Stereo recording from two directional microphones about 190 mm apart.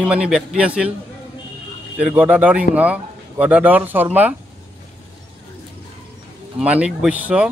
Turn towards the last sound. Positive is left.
turn(degrees=-5)  # may be behind; listen again after turning